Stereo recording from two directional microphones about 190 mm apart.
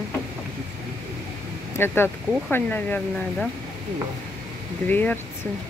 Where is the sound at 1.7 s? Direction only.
10° left (ahead or behind).